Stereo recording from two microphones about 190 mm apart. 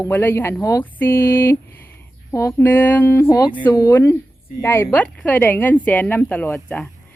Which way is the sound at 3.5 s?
25° left (ahead or behind).